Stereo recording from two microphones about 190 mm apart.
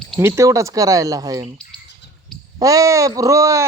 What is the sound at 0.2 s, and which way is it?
Speech, 15° right (ahead or behind).